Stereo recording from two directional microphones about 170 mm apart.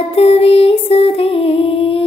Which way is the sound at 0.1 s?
35° left (ahead or behind).